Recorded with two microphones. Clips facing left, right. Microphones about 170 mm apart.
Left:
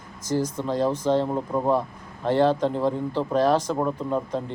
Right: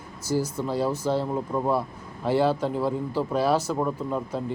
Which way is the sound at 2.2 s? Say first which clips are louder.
Left 2 dB; 10° right (ahead or behind).